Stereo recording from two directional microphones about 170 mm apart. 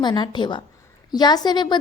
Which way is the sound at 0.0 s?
25° left (ahead or behind).